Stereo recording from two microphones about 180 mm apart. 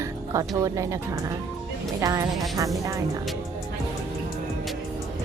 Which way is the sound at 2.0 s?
15° right (ahead or behind).